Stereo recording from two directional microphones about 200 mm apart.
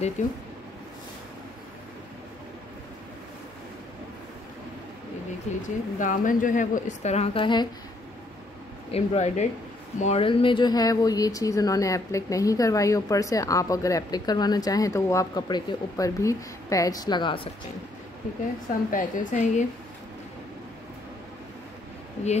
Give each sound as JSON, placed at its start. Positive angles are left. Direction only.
{"t": 0.2, "sound": "a woman's voice", "side_deg": 40}
{"t": 5.6, "sound": "a woman's voice", "side_deg": 40}
{"t": 8.9, "sound": "a woman's voice", "side_deg": 35}
{"t": 18.9, "sound": "a woman's voice", "side_deg": 40}